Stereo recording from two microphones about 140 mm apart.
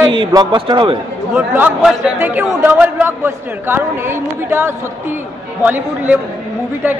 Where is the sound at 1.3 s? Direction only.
10° right (ahead or behind).